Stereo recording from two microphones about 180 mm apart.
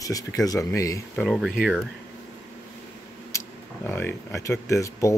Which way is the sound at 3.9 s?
15° left (ahead or behind).